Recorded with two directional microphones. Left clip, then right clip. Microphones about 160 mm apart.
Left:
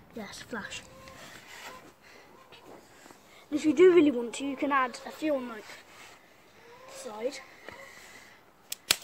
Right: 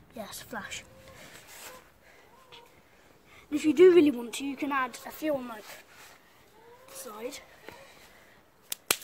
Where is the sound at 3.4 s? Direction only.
85° right.